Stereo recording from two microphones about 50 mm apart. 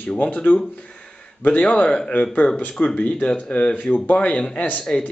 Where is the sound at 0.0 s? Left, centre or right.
Left.